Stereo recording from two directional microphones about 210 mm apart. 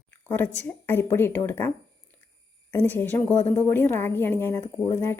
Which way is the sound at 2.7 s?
10° left (ahead or behind).